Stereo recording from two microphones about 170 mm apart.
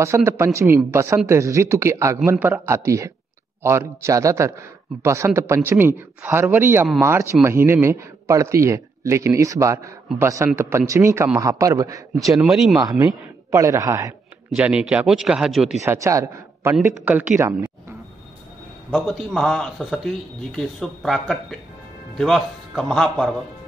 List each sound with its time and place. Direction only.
0.0 s a man's voice: 15° right (ahead or behind)
12.4 s speech: 5° right (ahead or behind)
13.0 s a man's voice: 15° right (ahead or behind)
14.5 s speech: 5° right (ahead or behind)
15.8 s a man's voice: 15° right (ahead or behind)
18.9 s speech: centre (ahead or behind)